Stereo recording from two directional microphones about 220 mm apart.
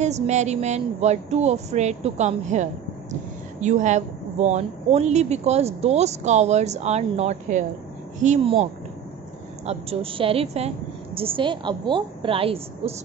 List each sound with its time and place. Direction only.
0.0 s speech: 30° right (ahead or behind)
9.7 s a woman's voice: 25° right (ahead or behind)